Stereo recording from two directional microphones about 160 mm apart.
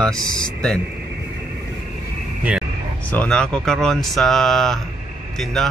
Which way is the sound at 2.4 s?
5° right (ahead or behind).